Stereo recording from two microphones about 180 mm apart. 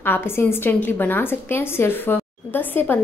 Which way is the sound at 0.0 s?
10° left (ahead or behind).